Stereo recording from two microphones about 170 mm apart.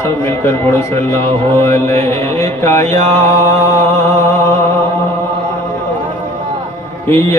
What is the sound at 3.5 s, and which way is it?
Mantra, 15° left (ahead or behind).